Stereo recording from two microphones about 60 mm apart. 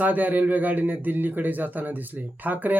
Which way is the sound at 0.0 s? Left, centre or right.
Right.